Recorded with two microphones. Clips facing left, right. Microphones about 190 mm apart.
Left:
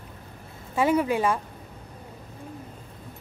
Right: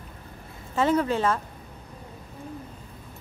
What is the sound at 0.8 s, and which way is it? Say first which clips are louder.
Speech: left 1 dB; 10° left (ahead or behind).